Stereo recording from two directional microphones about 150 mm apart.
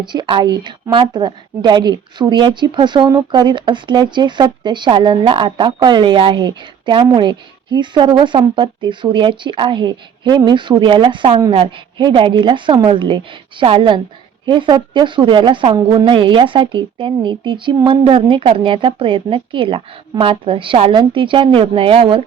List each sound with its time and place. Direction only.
0.0 s a woman's voice: 30° right (ahead or behind)